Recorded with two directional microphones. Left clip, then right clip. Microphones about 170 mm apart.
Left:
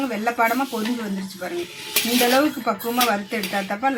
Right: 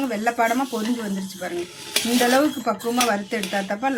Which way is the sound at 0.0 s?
15° right (ahead or behind).